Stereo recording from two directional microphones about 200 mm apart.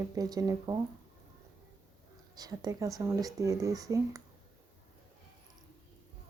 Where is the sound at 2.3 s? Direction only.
20° right (ahead or behind).